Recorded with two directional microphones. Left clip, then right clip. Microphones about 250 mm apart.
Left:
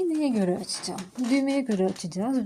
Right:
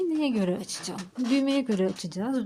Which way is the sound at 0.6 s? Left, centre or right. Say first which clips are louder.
Left 3 dB; right.